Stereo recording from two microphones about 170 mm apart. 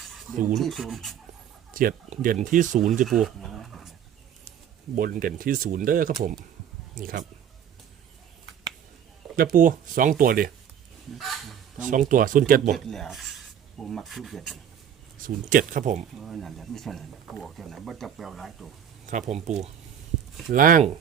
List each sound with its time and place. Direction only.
0.5 s speech: centre (ahead or behind)
1.7 s speech: 55° right (ahead or behind)
3.1 s a sound: centre (ahead or behind)
4.9 s speech: 55° right (ahead or behind)
9.3 s speech: 55° right (ahead or behind)
11.2 s speech: centre (ahead or behind)
11.9 s speech: 50° right (ahead or behind)
12.7 s filing: centre (ahead or behind)
15.4 s speech: 50° right (ahead or behind)
16.2 s speech: centre (ahead or behind)
19.0 s speech: 45° right (ahead or behind)
20.5 s speech: 55° right (ahead or behind)